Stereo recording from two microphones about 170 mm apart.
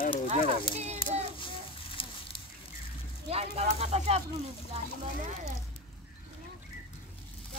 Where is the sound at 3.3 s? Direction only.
40° right (ahead or behind).